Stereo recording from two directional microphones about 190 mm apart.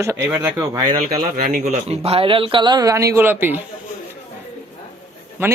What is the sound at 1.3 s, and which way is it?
Speech, 50° right (ahead or behind).